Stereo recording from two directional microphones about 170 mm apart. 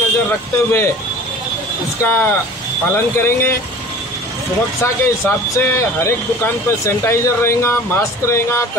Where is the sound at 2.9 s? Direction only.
15° left (ahead or behind).